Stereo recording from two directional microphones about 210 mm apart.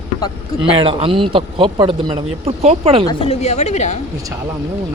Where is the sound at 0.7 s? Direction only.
25° right (ahead or behind).